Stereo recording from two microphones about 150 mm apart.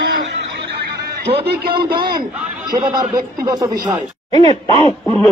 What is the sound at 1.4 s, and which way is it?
Speech, 90° right.